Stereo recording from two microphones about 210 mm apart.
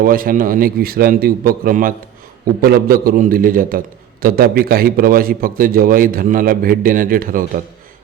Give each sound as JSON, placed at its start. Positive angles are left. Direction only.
{"t": 0.0, "sound": "a man's voice", "side_deg": -40}